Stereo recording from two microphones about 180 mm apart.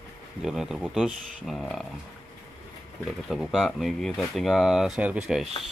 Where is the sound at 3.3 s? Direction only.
Centre (ahead or behind).